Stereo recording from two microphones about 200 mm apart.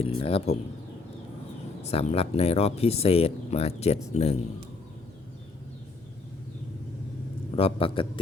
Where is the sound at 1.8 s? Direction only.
30° left (ahead or behind).